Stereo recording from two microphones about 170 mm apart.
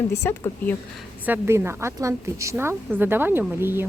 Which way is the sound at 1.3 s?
15° right (ahead or behind).